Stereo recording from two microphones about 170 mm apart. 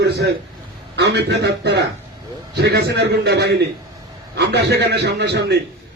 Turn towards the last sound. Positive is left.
turn(degrees=-80)